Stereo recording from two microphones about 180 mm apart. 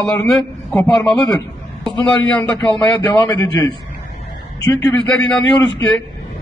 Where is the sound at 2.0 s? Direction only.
10° left (ahead or behind).